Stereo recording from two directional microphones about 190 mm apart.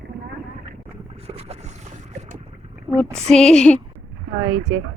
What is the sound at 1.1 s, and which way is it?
Boat, 30° right (ahead or behind).